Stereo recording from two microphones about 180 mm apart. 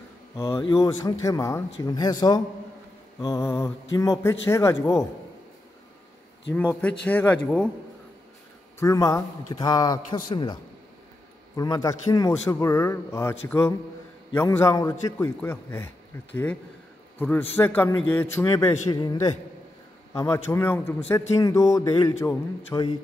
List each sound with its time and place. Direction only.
0.6 s a man's voice: 25° left (ahead or behind)
6.5 s a man's voice: 10° left (ahead or behind)
8.7 s a man's voice: 20° left (ahead or behind)
17.2 s a man's voice: 10° left (ahead or behind)